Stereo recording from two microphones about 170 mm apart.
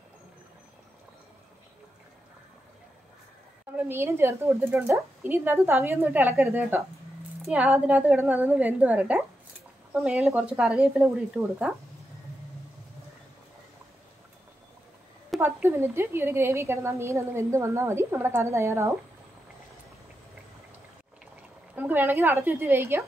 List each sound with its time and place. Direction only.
3.7 s a woman's voice: 10° right (ahead or behind)
15.4 s a woman's voice: 15° right (ahead or behind)
21.7 s a woman's voice: 10° right (ahead or behind)